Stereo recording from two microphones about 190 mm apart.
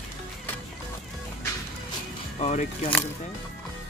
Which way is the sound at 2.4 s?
40° left (ahead or behind).